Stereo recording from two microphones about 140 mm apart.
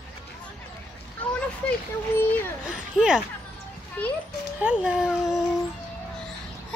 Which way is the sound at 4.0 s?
10° left (ahead or behind).